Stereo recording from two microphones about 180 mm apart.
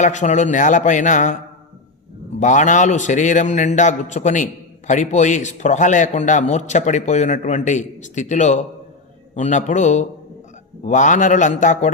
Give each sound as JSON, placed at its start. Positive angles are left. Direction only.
{"t": 0.0, "sound": "a man's voice", "side_deg": 40}
{"t": 2.4, "sound": "a man's voice", "side_deg": 45}